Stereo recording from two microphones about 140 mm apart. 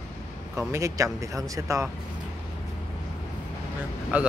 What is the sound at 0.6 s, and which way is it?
Speech, 20° right (ahead or behind).